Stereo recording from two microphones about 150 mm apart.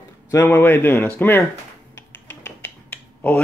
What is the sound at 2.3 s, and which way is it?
Finger snapping, 10° left (ahead or behind).